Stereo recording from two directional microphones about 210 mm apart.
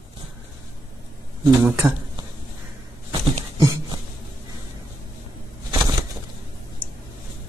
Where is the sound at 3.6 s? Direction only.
15° right (ahead or behind).